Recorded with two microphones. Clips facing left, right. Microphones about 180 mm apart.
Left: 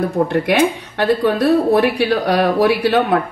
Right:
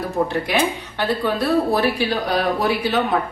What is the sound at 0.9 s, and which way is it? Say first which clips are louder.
Speech: left 6 dB; 65° left (ahead or behind).